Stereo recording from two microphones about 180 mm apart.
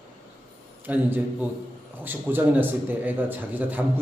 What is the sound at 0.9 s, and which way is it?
A man's voice, 10° right (ahead or behind).